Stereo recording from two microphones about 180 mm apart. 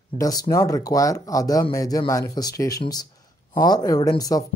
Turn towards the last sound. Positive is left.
turn(degrees=20)  # may be behind; listen again after turning